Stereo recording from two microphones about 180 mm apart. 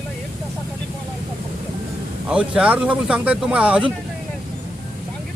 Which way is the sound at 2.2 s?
5° right (ahead or behind).